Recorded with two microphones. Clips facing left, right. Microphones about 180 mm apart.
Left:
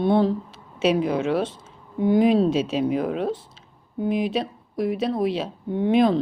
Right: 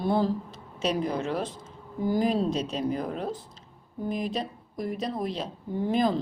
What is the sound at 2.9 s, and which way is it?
Speech, 90° left.